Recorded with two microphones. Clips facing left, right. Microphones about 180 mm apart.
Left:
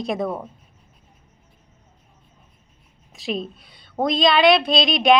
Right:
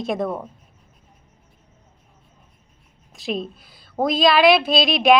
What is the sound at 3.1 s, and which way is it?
A woman's voice, centre (ahead or behind).